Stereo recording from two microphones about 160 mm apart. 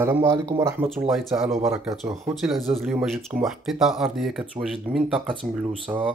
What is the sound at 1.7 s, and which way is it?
Speech, 20° right (ahead or behind).